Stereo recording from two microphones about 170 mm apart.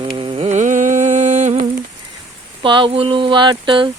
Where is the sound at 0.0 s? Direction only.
30° right (ahead or behind).